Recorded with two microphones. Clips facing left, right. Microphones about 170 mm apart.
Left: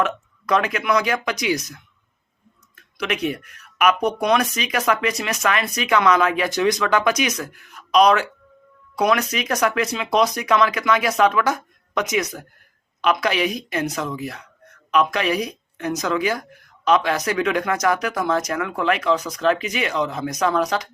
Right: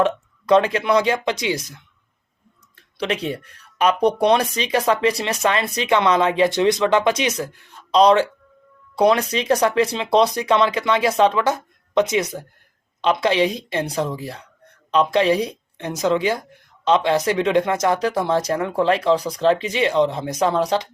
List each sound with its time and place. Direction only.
0.0 s a woman's voice: 30° right (ahead or behind)